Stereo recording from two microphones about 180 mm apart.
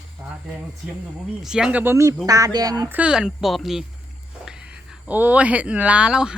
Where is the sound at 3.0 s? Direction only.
5° right (ahead or behind).